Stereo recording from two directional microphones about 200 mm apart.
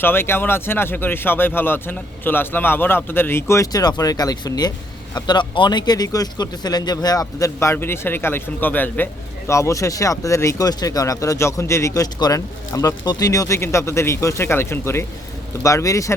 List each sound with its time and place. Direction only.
0.0 s a man's voice: 10° left (ahead or behind)